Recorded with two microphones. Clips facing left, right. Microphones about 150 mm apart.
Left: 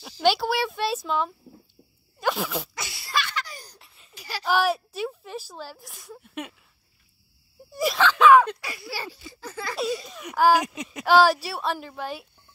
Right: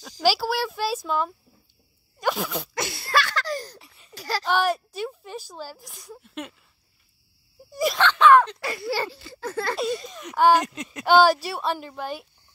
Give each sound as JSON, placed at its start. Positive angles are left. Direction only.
{"t": 0.2, "sound": "a child's voice", "side_deg": 0}
{"t": 2.1, "sound": "sneeze", "side_deg": 0}
{"t": 2.7, "sound": "laughter", "side_deg": -50}
{"t": 3.3, "sound": "a sound", "side_deg": -90}
{"t": 3.7, "sound": "a sound", "side_deg": 0}
{"t": 4.5, "sound": "speech", "side_deg": 0}
{"t": 6.2, "sound": "a sound", "side_deg": 10}
{"t": 7.7, "sound": "speech", "side_deg": 0}
{"t": 8.5, "sound": "speech", "side_deg": -50}
{"t": 9.8, "sound": "speech", "side_deg": 5}